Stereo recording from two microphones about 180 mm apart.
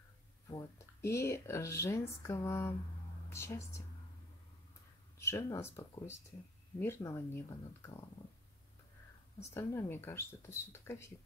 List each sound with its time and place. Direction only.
0.5 s speech: 15° left (ahead or behind)
5.2 s speech: 15° left (ahead or behind)
9.5 s speech: 15° left (ahead or behind)